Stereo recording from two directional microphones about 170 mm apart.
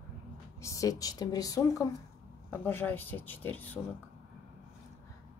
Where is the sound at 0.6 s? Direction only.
20° left (ahead or behind).